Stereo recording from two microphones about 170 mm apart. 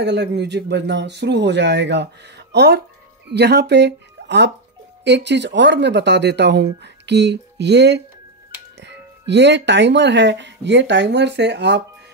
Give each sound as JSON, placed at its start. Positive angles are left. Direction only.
{"t": 0.0, "sound": "speech", "side_deg": -85}